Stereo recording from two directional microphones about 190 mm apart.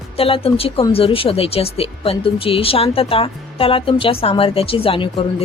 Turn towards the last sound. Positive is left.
turn(degrees=25)  # may be behind; listen again after turning